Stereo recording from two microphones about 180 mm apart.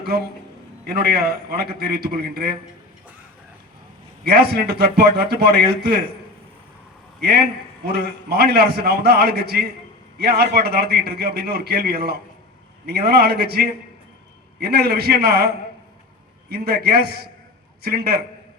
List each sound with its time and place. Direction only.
0.0 s a man's voice: 60° right (ahead or behind)
4.2 s a man's voice: 60° right (ahead or behind)
7.2 s a man's voice: 60° right (ahead or behind)
16.5 s a man's voice: 60° right (ahead or behind)